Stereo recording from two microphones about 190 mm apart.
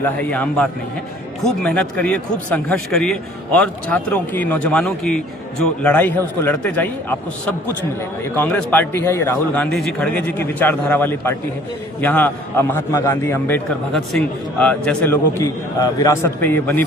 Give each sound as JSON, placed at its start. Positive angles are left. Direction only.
{"t": 0.0, "sound": "a man's voice", "side_deg": 10}
{"t": 8.4, "sound": "a man's voice", "side_deg": 10}